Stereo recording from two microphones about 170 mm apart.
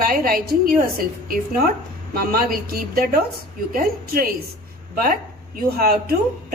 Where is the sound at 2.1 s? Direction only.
60° right (ahead or behind).